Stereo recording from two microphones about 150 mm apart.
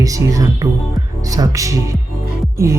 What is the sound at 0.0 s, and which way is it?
A woman's voice, 20° right (ahead or behind).